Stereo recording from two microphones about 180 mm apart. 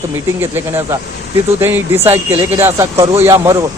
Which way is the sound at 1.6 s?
15° right (ahead or behind).